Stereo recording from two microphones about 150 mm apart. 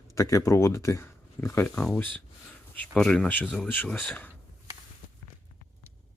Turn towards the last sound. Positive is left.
turn(degrees=10)  # may be behind; listen again after turning